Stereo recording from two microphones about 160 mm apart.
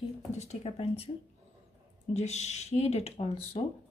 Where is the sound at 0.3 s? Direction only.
45° left (ahead or behind).